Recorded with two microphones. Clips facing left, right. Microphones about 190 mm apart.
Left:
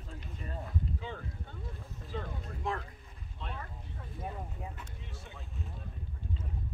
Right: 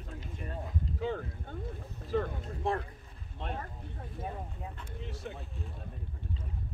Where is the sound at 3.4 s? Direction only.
50° right (ahead or behind).